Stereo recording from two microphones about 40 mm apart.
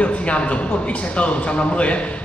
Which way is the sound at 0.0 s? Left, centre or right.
Left.